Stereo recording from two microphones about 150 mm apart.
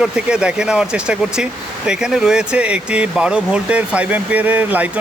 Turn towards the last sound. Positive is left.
turn(degrees=-10)  # may be behind; listen again after turning